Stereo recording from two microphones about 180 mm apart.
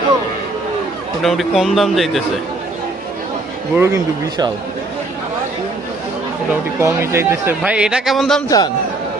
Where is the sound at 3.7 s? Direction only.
15° right (ahead or behind).